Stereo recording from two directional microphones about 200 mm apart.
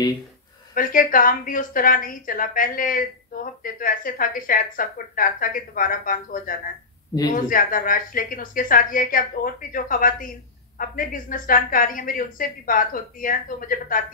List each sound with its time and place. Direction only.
0.7 s a woman's voice: 45° left (ahead or behind)